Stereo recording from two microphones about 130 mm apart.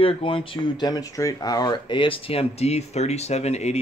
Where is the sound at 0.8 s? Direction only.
30° left (ahead or behind).